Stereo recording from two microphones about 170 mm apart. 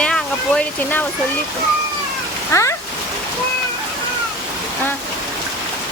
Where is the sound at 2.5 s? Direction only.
15° left (ahead or behind).